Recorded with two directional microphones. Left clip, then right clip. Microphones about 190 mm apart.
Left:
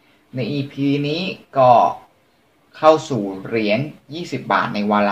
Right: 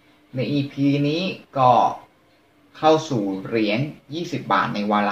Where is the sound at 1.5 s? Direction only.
55° left (ahead or behind).